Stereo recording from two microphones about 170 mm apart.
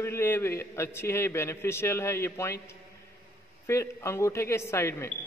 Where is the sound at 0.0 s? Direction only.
15° left (ahead or behind).